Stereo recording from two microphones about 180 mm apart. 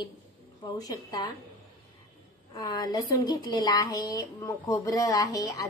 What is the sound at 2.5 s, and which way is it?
Speech, 25° left (ahead or behind).